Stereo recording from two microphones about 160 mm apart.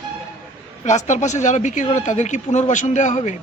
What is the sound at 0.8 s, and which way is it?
A woman's voice, 45° left (ahead or behind).